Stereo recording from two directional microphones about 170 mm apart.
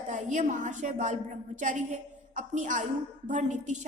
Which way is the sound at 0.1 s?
45° right (ahead or behind).